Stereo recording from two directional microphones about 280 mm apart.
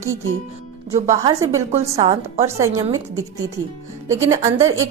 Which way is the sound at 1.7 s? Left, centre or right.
Right.